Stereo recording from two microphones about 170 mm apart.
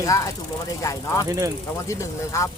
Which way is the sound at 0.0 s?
20° left (ahead or behind).